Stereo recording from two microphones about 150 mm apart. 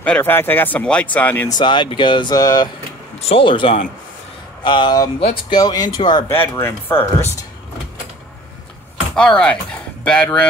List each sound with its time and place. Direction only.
0.0 s speech: 10° left (ahead or behind)
1.5 s speech: 30° left (ahead or behind)
3.2 s speech: 40° left (ahead or behind)
6.3 s speech: 15° left (ahead or behind)
9.1 s speech: 5° left (ahead or behind)